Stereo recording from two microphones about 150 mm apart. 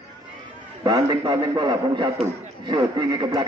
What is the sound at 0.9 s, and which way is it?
A man's voice, 30° right (ahead or behind).